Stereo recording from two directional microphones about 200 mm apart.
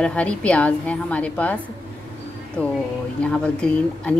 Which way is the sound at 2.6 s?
10° left (ahead or behind).